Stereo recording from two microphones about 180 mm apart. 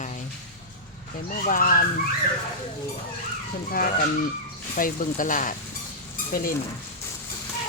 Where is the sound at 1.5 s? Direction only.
50° left (ahead or behind).